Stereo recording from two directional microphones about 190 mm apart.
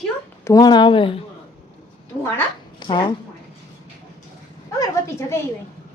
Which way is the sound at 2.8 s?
25° left (ahead or behind).